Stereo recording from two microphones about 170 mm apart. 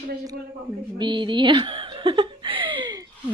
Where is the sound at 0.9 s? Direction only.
25° right (ahead or behind).